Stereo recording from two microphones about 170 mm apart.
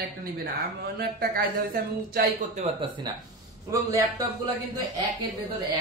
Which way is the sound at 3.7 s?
20° right (ahead or behind).